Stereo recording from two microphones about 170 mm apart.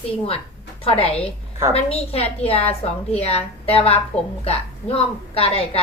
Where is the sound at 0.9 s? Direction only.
35° left (ahead or behind).